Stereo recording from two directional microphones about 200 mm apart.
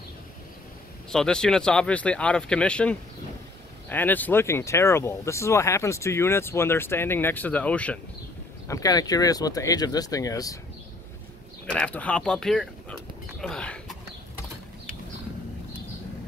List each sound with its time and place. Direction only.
1.1 s speech: 5° left (ahead or behind)
8.6 s speech: 15° left (ahead or behind)
11.6 s speech: 5° left (ahead or behind)